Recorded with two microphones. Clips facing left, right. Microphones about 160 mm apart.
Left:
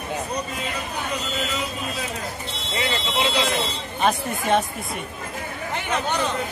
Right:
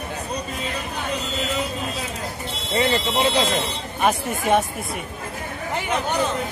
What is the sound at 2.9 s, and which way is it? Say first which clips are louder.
Speech: even; 45° right (ahead or behind).